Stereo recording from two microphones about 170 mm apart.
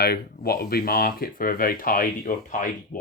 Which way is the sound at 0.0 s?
65° left (ahead or behind).